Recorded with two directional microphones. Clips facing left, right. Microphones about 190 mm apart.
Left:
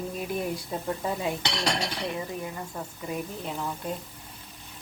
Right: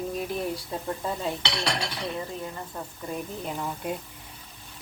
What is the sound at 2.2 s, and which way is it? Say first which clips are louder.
Speech: even; 10° left (ahead or behind).